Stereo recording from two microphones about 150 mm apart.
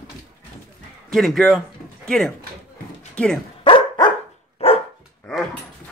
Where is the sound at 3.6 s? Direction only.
35° left (ahead or behind).